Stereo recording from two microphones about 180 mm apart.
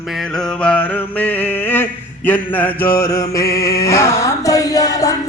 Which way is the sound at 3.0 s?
15° left (ahead or behind).